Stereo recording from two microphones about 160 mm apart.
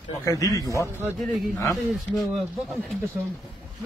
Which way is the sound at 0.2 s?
20° left (ahead or behind).